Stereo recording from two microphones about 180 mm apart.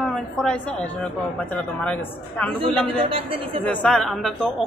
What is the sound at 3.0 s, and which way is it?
Speech, 30° right (ahead or behind).